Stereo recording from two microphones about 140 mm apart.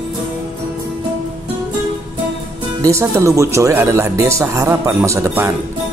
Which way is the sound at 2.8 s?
20° right (ahead or behind).